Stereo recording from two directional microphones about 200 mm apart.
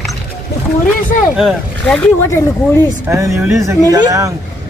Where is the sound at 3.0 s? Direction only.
15° right (ahead or behind).